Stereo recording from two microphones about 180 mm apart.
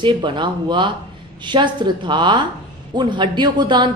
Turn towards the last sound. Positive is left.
turn(degrees=-25)  # may be behind; listen again after turning